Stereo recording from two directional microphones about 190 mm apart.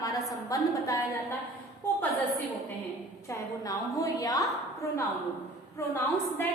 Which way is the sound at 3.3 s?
20° left (ahead or behind).